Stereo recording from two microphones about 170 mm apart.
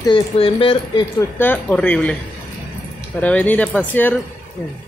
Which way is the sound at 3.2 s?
10° left (ahead or behind).